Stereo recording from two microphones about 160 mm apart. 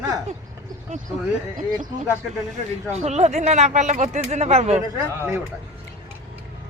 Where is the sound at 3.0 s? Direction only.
45° right (ahead or behind).